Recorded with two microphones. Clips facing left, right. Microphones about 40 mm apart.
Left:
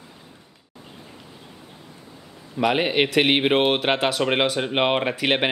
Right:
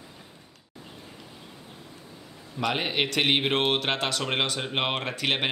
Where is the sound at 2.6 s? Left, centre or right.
Centre.